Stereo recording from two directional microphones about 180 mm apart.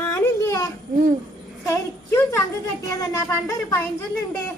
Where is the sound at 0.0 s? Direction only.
15° left (ahead or behind).